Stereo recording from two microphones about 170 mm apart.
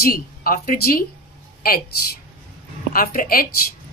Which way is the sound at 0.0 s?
60° left (ahead or behind).